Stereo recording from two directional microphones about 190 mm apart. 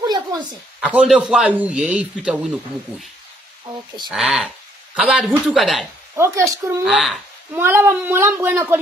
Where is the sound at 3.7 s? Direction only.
25° right (ahead or behind).